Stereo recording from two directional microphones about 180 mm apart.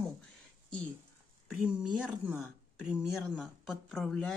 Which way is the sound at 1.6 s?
5° right (ahead or behind).